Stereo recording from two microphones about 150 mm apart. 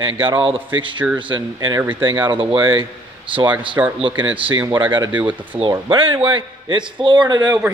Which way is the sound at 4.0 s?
35° right (ahead or behind).